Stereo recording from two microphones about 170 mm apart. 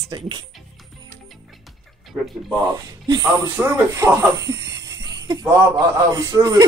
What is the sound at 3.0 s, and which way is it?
Speech, 25° right (ahead or behind).